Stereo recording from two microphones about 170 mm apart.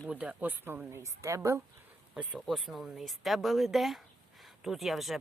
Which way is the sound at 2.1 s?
5° right (ahead or behind).